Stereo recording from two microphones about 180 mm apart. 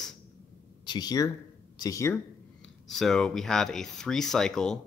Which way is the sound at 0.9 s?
20° left (ahead or behind).